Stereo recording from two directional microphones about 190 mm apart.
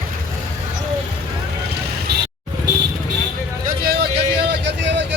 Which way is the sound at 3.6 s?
55° right (ahead or behind).